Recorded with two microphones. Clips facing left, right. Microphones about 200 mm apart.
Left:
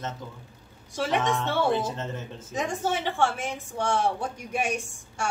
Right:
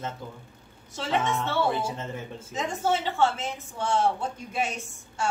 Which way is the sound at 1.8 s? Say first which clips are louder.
Left 1 dB; 10° right (ahead or behind).